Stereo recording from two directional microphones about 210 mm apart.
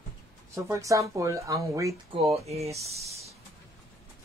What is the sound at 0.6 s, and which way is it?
Speech, 15° right (ahead or behind).